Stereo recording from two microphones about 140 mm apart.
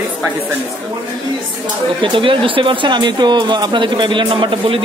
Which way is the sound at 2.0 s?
40° right (ahead or behind).